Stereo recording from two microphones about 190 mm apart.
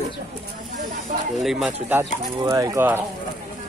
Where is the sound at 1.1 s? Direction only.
40° right (ahead or behind).